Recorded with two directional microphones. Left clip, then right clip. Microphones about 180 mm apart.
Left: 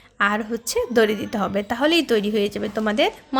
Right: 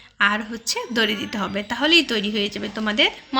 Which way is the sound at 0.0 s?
60° left (ahead or behind).